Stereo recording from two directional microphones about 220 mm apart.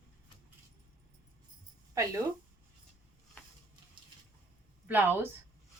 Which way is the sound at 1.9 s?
15° right (ahead or behind).